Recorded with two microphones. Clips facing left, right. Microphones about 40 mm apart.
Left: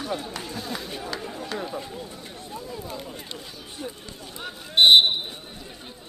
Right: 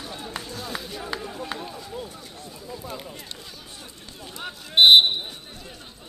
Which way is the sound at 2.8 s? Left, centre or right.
Centre.